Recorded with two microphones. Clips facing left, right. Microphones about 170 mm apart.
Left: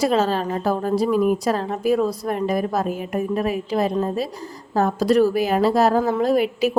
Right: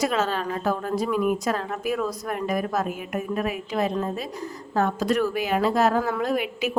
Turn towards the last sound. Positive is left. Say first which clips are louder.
# left 7 dB
turn(degrees=35)  # may be behind; listen again after turning